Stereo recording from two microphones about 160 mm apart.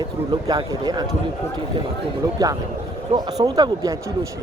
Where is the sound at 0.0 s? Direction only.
25° right (ahead or behind).